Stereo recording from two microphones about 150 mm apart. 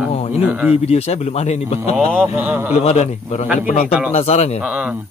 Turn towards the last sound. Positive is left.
turn(degrees=-10)  # may be behind; listen again after turning